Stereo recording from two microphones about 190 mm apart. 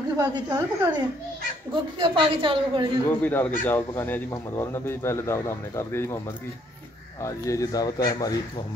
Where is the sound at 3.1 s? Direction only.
10° left (ahead or behind).